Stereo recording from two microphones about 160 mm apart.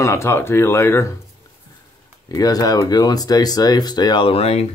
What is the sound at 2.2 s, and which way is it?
Speech, 25° left (ahead or behind).